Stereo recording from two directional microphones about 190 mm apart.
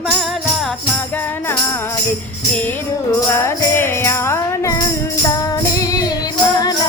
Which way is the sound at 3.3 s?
15° left (ahead or behind).